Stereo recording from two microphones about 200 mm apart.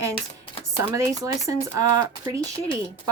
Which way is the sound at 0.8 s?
15° right (ahead or behind).